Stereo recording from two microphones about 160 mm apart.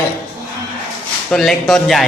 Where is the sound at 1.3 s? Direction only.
Centre (ahead or behind).